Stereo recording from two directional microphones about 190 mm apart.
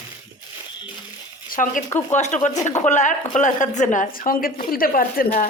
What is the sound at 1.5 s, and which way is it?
A woman's voice, 45° left (ahead or behind).